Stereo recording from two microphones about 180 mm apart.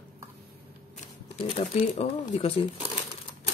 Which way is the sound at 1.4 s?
35° left (ahead or behind).